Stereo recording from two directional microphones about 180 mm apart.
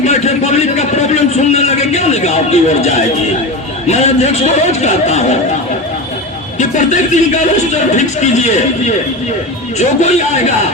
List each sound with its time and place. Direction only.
0.0 s a sound: 40° left (ahead or behind)
3.8 s speech: 40° left (ahead or behind)
6.6 s speech: 45° left (ahead or behind)
9.7 s speech: 40° left (ahead or behind)